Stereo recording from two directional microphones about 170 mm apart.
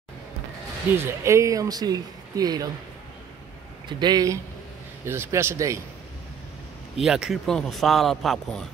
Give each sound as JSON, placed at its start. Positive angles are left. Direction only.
{"t": 0.9, "sound": "speech", "side_deg": -15}
{"t": 4.0, "sound": "a man's voice", "side_deg": -20}
{"t": 7.0, "sound": "speech", "side_deg": 0}